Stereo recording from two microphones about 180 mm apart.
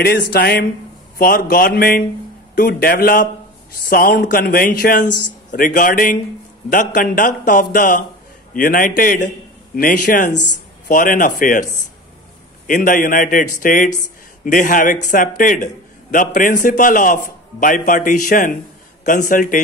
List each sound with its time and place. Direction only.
0.3 s a man's voice: 60° left (ahead or behind)